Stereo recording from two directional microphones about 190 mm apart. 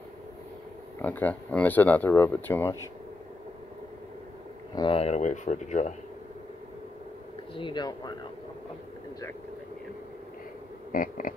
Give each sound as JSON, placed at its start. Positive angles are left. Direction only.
{"t": 1.0, "sound": "speech", "side_deg": 10}
{"t": 4.7, "sound": "speech", "side_deg": 30}
{"t": 7.5, "sound": "speech", "side_deg": 25}
{"t": 10.9, "sound": "a sound", "side_deg": 45}